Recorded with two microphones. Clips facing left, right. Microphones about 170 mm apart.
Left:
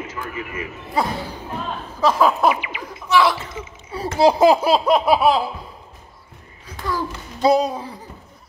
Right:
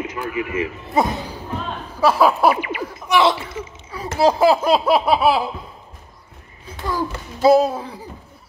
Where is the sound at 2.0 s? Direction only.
10° right (ahead or behind).